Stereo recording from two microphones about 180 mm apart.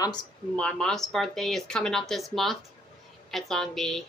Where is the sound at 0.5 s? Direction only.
5° left (ahead or behind).